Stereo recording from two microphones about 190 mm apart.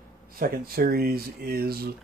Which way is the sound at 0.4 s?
50° right (ahead or behind).